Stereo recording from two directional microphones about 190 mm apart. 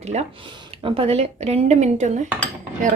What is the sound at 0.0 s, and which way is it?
Speech, 35° right (ahead or behind).